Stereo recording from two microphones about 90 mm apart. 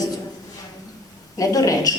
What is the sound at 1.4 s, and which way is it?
Speech, 40° left (ahead or behind).